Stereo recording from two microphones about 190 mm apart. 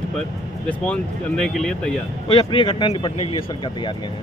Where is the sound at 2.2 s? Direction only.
25° left (ahead or behind).